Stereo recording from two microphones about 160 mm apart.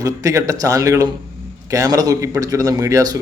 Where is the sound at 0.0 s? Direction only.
20° right (ahead or behind).